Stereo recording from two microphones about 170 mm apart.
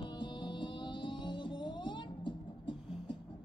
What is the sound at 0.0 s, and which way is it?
Music, 25° left (ahead or behind).